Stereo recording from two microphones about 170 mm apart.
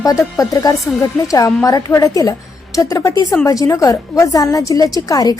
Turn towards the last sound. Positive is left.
turn(degrees=20)  # may be behind; listen again after turning